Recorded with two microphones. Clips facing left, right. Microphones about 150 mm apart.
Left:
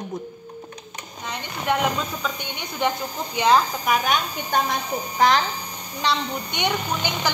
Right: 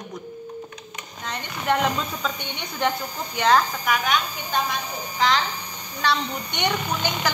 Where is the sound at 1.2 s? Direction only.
5° left (ahead or behind).